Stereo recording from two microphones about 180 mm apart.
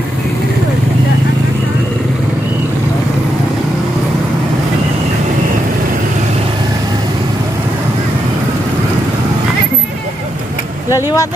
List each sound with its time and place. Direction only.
10.9 s speech: 20° left (ahead or behind)